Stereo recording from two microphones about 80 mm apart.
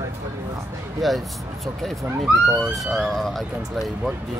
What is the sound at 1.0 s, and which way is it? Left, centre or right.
Speech, centre.